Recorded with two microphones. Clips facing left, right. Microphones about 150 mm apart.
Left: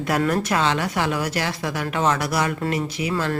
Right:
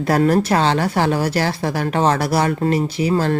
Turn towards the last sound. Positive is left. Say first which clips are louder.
# right 6 dB
turn(degrees=-35)  # may be behind; listen again after turning